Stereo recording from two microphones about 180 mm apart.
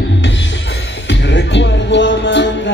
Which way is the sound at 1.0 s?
85° left.